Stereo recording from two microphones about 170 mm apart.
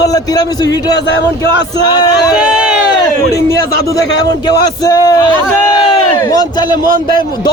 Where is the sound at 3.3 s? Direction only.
20° left (ahead or behind).